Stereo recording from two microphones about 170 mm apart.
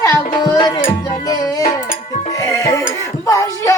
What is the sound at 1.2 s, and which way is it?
Music, 20° left (ahead or behind).